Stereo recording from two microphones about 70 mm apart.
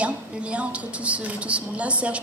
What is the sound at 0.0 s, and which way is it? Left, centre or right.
A woman's voice, centre.